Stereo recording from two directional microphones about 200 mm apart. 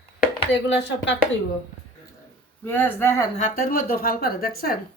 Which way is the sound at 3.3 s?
40° left (ahead or behind).